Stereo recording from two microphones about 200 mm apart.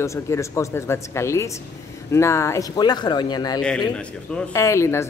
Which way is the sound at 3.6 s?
5° left (ahead or behind).